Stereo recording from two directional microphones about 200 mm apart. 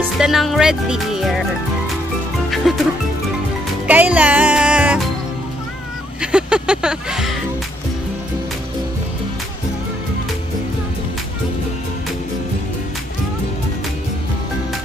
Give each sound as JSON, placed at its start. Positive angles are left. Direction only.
{"t": 0.2, "sound": "speech", "side_deg": 0}
{"t": 2.6, "sound": "speech", "side_deg": 0}
{"t": 3.8, "sound": "speech", "side_deg": -5}
{"t": 6.3, "sound": "speech", "side_deg": -5}